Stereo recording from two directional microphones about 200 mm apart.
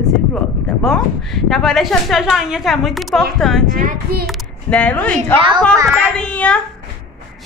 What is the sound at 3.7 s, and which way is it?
Speech, 40° right (ahead or behind).